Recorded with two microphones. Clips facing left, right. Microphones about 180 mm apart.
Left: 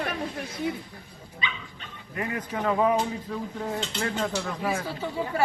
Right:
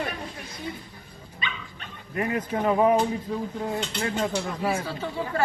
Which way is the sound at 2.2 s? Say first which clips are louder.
Right 4 dB; 20° right (ahead or behind).